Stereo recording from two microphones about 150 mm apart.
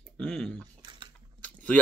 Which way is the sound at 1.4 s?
10° left (ahead or behind).